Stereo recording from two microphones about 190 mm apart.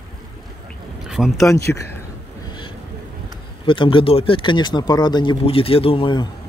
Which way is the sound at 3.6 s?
25° left (ahead or behind).